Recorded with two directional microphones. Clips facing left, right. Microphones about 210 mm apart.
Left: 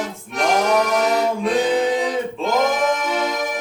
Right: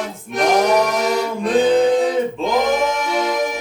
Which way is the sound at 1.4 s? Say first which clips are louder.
Right 8 dB; centre (ahead or behind).